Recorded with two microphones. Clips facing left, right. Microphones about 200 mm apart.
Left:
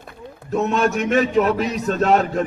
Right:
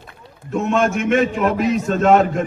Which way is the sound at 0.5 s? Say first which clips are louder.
Right 1 dB; 40° left (ahead or behind).